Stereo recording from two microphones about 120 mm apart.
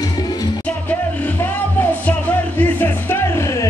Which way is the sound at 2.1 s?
15° left (ahead or behind).